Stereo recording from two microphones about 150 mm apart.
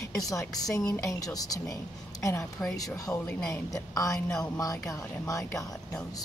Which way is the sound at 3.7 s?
20° left (ahead or behind).